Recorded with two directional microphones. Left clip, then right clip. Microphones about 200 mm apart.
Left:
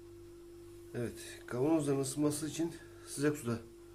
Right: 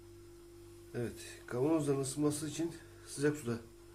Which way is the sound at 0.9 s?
5° left (ahead or behind).